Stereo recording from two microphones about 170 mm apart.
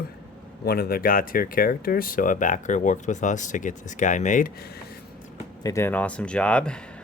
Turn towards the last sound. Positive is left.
turn(degrees=5)  # may be behind; listen again after turning